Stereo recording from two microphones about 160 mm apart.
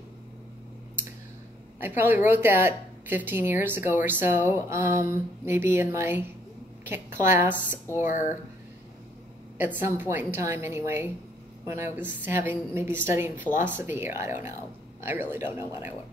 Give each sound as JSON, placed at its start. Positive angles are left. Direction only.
{"t": 1.8, "sound": "a woman's voice", "side_deg": -10}
{"t": 8.0, "sound": "speech", "side_deg": 50}
{"t": 9.6, "sound": "a woman's voice", "side_deg": -10}